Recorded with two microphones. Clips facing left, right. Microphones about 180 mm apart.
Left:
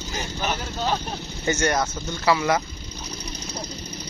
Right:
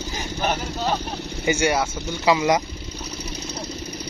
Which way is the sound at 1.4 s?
10° right (ahead or behind).